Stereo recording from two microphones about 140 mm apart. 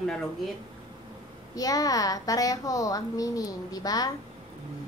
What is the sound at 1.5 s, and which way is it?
A woman's voice, 25° left (ahead or behind).